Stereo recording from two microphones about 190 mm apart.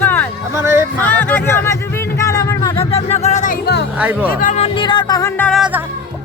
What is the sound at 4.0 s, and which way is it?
Music, 10° right (ahead or behind).